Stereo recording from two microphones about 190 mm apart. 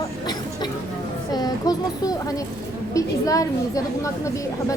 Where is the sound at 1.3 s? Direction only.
20° left (ahead or behind).